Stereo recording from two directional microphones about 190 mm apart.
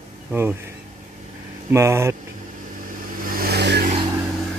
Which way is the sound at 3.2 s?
50° right (ahead or behind).